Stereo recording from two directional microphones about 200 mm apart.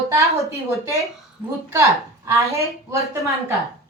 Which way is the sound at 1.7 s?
15° right (ahead or behind).